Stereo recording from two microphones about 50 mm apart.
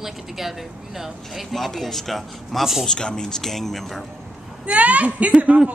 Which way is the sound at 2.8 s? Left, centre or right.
Centre.